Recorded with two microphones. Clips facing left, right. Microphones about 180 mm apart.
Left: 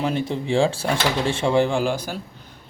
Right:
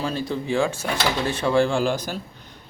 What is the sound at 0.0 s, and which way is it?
A man's voice, 25° left (ahead or behind).